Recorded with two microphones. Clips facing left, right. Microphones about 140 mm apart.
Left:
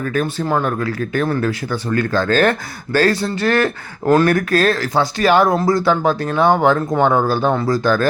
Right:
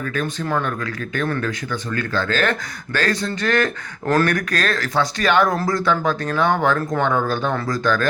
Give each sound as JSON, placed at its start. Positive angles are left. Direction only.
{"t": 0.0, "sound": "speech", "side_deg": 35}